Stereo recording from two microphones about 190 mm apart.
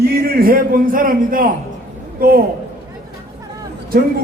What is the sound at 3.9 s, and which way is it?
Speech, 50° right (ahead or behind).